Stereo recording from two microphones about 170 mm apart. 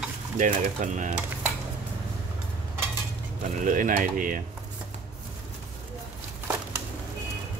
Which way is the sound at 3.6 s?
50° right (ahead or behind).